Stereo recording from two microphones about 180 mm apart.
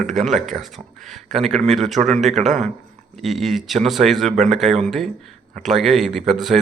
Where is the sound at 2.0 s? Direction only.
40° right (ahead or behind).